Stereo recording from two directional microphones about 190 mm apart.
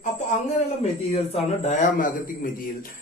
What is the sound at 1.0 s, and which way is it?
A man's voice, 35° left (ahead or behind).